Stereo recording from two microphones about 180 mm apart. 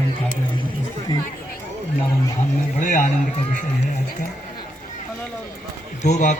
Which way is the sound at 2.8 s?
45° left (ahead or behind).